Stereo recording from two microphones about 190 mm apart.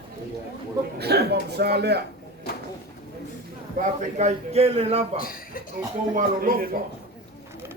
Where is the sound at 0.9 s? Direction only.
60° right (ahead or behind).